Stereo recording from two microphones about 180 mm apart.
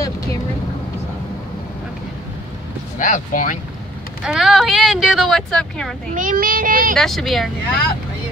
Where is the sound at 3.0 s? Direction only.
45° left (ahead or behind).